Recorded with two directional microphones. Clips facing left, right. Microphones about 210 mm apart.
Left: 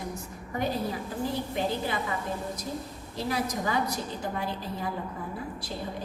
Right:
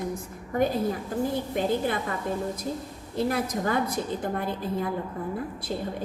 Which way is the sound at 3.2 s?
55° right (ahead or behind).